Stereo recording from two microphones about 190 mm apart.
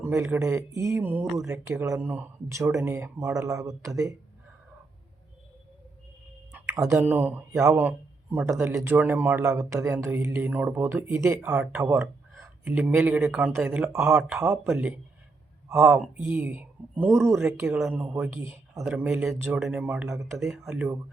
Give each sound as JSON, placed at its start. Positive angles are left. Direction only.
{"t": 0.0, "sound": "a man's voice", "side_deg": -10}
{"t": 6.5, "sound": "a sound", "side_deg": -15}
{"t": 6.9, "sound": "a man's voice", "side_deg": -10}